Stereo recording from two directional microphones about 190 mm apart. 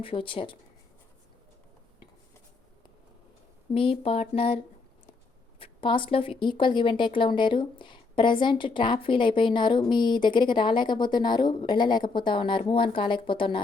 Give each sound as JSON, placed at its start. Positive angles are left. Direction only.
{"t": 0.0, "sound": "speech", "side_deg": 25}
{"t": 3.7, "sound": "speech", "side_deg": 30}